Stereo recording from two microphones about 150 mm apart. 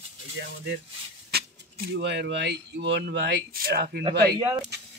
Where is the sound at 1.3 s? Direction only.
90° right.